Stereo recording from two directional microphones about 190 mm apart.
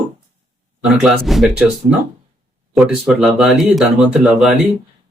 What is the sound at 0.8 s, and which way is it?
Speech, centre (ahead or behind).